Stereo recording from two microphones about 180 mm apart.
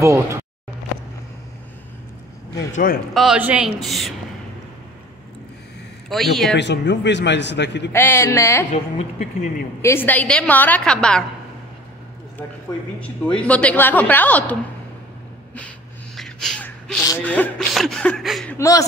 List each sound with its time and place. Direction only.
0.0 s speech: 15° right (ahead or behind)
2.7 s a man's voice: 50° left (ahead or behind)
3.2 s speech: 5° right (ahead or behind)
6.0 s speech: centre (ahead or behind)
6.5 s a man's voice: 75° left (ahead or behind)
7.9 s a woman's voice: 15° left (ahead or behind)
8.6 s a woman's voice: 40° left (ahead or behind)
9.8 s a woman's voice: 15° left (ahead or behind)
13.0 s a woman's voice: 5° left (ahead or behind)
16.2 s gasp: 5° left (ahead or behind)
17.1 s speech: 10° left (ahead or behind)
18.5 s a woman's voice: 15° left (ahead or behind)